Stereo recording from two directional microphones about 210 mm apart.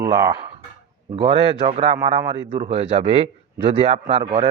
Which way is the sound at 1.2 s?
30° right (ahead or behind).